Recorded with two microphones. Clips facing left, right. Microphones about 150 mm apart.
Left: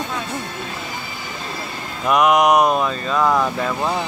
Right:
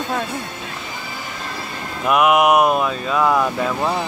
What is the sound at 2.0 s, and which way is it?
Speech, 5° right (ahead or behind).